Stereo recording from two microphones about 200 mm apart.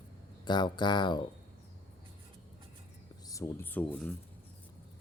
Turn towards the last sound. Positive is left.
turn(degrees=5)  # may be behind; listen again after turning